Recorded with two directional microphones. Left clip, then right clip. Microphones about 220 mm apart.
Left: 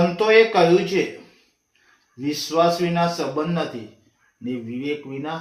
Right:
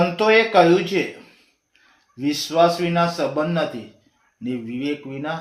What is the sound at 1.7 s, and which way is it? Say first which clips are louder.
Speech: right 1 dB; 50° right (ahead or behind).